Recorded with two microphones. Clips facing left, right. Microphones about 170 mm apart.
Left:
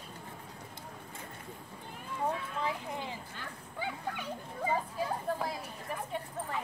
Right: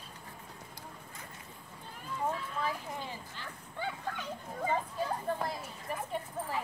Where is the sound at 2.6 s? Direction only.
20° left (ahead or behind); by 6.6 s centre (ahead or behind).